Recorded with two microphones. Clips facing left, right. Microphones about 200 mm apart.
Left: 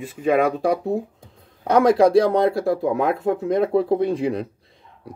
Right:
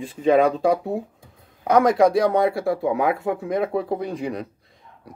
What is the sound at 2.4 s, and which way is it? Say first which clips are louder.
Speech: left 2 dB; 5° right (ahead or behind).